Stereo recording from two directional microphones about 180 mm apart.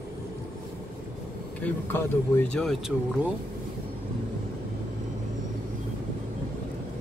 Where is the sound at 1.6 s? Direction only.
10° left (ahead or behind).